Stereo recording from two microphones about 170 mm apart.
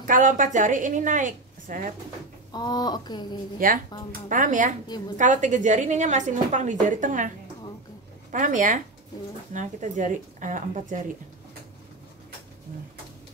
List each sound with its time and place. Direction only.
0.0 s a woman's voice: 50° right (ahead or behind)
2.5 s speech: 25° left (ahead or behind)
3.5 s a woman's voice: 55° right (ahead or behind)